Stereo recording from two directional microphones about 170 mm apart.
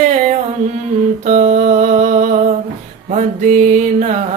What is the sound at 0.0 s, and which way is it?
Music, 45° right (ahead or behind).